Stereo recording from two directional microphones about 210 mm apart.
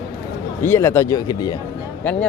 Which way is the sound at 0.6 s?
10° left (ahead or behind).